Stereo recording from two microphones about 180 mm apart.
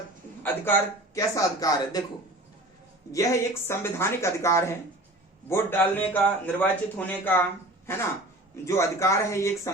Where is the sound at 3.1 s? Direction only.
15° left (ahead or behind).